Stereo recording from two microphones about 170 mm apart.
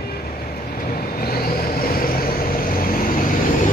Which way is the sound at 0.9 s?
60° left (ahead or behind).